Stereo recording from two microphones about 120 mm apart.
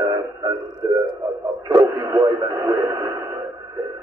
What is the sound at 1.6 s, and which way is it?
Speech, 30° right (ahead or behind).